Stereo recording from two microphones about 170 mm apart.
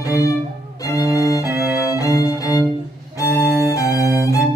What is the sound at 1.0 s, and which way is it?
Violin, 15° right (ahead or behind).